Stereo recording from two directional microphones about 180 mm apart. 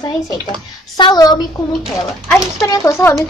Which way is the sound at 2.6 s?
20° left (ahead or behind).